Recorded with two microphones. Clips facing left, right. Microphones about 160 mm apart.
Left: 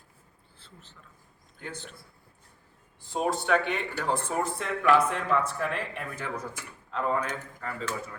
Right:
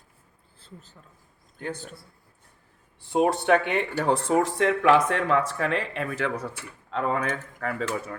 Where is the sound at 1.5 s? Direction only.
50° right (ahead or behind).